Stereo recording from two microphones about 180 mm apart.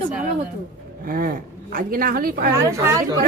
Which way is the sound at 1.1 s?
55° right (ahead or behind).